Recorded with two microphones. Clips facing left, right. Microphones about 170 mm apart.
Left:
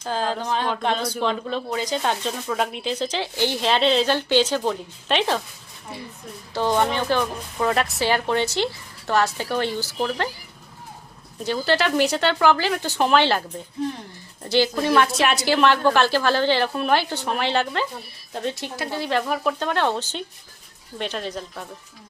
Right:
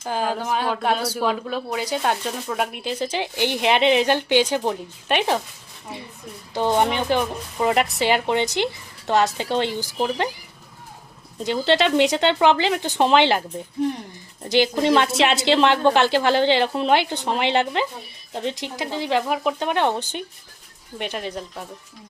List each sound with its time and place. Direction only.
0.0 s speech: 10° right (ahead or behind)
6.5 s speech: 15° right (ahead or behind)
11.3 s a woman's voice: 25° right (ahead or behind)
14.5 s a woman's voice: 20° right (ahead or behind)